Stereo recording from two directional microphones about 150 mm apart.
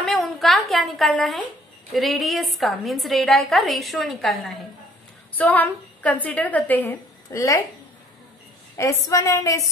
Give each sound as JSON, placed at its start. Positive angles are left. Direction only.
{"t": 0.0, "sound": "a sound", "side_deg": 0}
{"t": 2.0, "sound": "a woman's voice", "side_deg": 0}
{"t": 5.4, "sound": "a woman's voice", "side_deg": 10}
{"t": 8.7, "sound": "a woman's voice", "side_deg": 20}